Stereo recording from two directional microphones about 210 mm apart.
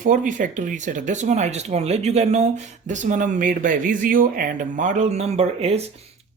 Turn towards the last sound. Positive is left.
turn(degrees=-30)  # may be behind; listen again after turning